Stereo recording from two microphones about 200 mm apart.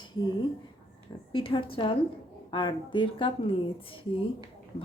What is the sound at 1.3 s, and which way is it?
Speech, 25° left (ahead or behind).